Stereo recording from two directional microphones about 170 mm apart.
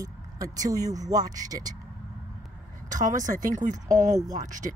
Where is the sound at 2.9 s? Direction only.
50° right (ahead or behind).